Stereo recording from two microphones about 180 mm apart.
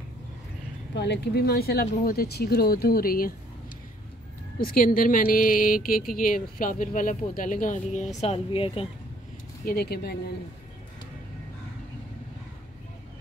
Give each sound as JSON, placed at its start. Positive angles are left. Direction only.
{"t": 0.9, "sound": "speech", "side_deg": 70}
{"t": 4.6, "sound": "a woman's voice", "side_deg": 55}
{"t": 9.7, "sound": "speech", "side_deg": 60}